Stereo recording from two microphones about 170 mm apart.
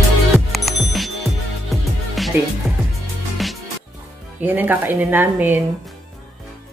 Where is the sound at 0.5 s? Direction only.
Centre (ahead or behind).